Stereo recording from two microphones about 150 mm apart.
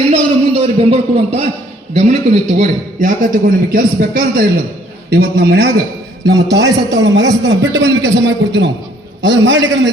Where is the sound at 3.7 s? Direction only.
75° right (ahead or behind).